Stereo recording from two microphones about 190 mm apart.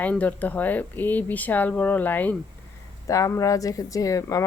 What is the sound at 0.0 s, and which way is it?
Speech, 10° left (ahead or behind).